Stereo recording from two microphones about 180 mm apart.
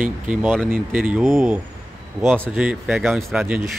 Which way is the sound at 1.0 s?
5° right (ahead or behind).